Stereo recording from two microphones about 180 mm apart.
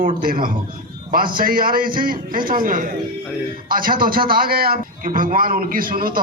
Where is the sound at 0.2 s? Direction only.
50° right (ahead or behind).